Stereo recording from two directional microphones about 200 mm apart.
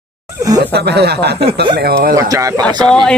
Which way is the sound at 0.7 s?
55° right (ahead or behind).